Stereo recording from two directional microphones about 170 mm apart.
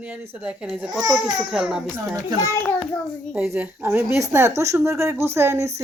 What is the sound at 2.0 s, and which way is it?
Speech, 20° right (ahead or behind).